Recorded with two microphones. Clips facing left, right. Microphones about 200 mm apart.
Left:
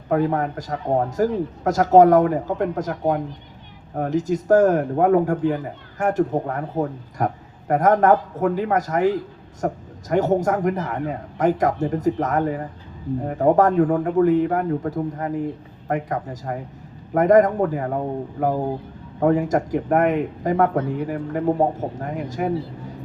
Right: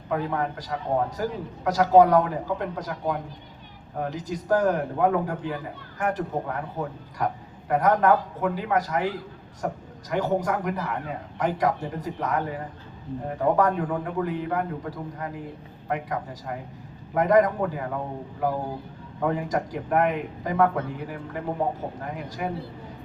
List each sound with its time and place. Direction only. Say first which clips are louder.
0.1 s a man's voice: left 6 dB; 45° left (ahead or behind)